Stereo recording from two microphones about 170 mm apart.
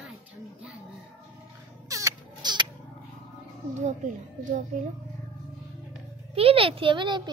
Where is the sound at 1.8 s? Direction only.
20° right (ahead or behind).